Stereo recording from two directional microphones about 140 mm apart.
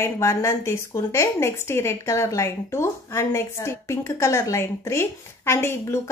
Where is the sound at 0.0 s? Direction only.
20° left (ahead or behind).